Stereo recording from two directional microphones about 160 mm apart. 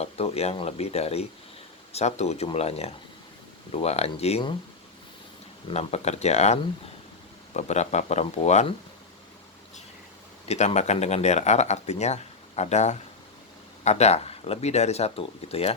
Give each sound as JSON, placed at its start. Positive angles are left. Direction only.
{"t": 0.0, "sound": "speech", "side_deg": 40}
{"t": 5.7, "sound": "speech", "side_deg": 40}
{"t": 10.5, "sound": "speech", "side_deg": 45}